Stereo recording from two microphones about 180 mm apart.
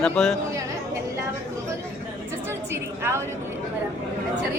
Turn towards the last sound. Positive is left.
turn(degrees=-15)  # may be behind; listen again after turning